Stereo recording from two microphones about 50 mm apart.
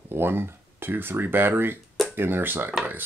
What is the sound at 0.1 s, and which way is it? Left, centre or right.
Speech, right.